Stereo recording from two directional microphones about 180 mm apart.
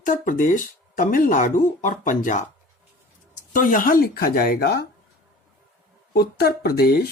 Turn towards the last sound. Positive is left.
turn(degrees=60)  # may be behind; listen again after turning